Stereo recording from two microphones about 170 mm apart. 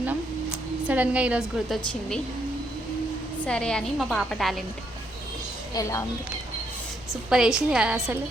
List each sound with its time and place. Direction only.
0.9 s a woman's voice: 10° right (ahead or behind)
3.4 s a woman's voice: 5° left (ahead or behind)
5.7 s speech: 20° left (ahead or behind)
7.1 s a woman's voice: 5° right (ahead or behind)